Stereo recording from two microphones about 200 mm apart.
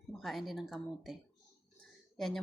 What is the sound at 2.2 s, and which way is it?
Speech, centre (ahead or behind).